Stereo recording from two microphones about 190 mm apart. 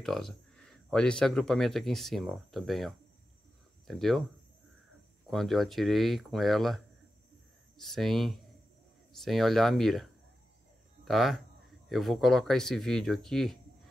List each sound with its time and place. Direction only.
0.0 s speech: centre (ahead or behind)
5.3 s speech: centre (ahead or behind)
11.1 s speech: centre (ahead or behind)